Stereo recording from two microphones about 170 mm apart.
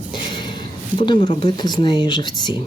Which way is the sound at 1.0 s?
30° left (ahead or behind).